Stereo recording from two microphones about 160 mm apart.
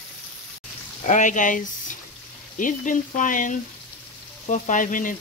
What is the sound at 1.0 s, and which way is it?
Speech, 50° left (ahead or behind).